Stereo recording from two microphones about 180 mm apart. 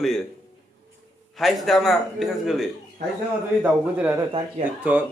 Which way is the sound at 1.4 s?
Centre (ahead or behind).